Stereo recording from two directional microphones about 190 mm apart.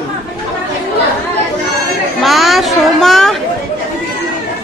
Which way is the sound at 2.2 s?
Centre (ahead or behind).